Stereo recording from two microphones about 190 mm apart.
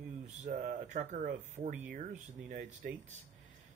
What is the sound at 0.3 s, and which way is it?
Speech, 40° right (ahead or behind).